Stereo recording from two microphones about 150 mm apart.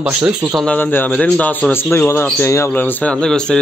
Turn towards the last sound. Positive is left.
turn(degrees=5)  # may be behind; listen again after turning